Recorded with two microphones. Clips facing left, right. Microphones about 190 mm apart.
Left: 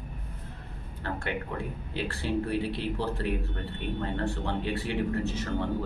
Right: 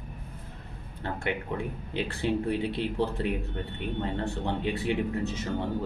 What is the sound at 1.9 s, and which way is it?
Speech, 20° right (ahead or behind).